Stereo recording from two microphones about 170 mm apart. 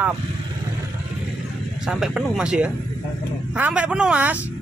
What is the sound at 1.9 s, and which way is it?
Speech, 5° right (ahead or behind).